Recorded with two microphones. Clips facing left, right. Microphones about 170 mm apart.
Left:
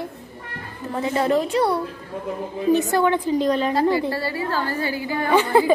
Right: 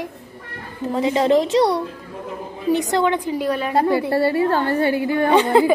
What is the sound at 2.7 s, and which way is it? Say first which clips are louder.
A woman's voice: even; 15° right (ahead or behind).